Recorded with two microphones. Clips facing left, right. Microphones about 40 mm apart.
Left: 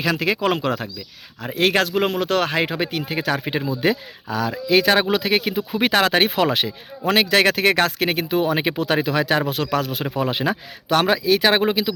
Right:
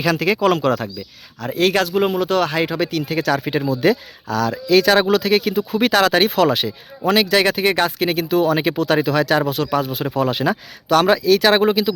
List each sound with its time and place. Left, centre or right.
0.0 s speech: centre
1.5 s speech: left
3.1 s speech: centre
7.1 s speech: left
8.1 s speech: left
8.8 s speech: centre
9.5 s speech: left
10.2 s speech: centre